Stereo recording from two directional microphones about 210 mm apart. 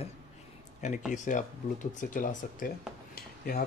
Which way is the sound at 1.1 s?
35° left (ahead or behind).